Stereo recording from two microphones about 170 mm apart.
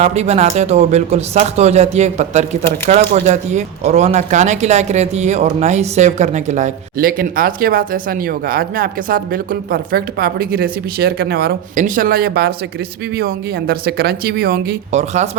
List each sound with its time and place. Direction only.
0.0 s a man's voice: 40° right (ahead or behind); by 14.6 s 60° right (ahead or behind)
14.9 s a man's voice: 40° right (ahead or behind)